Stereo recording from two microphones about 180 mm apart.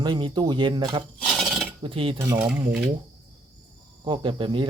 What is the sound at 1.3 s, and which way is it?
Filing, centre (ahead or behind).